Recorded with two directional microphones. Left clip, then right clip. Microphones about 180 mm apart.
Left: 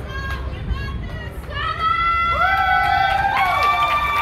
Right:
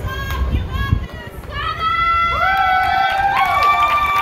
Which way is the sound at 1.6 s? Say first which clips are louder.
Right 1 dB; 25° left (ahead or behind).